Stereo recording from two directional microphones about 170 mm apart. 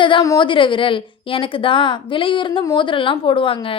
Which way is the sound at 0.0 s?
25° left (ahead or behind).